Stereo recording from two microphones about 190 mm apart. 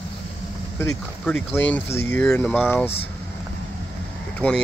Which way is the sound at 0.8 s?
10° left (ahead or behind).